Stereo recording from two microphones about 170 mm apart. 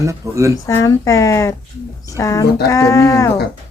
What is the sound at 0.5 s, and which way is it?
Speech, 20° left (ahead or behind).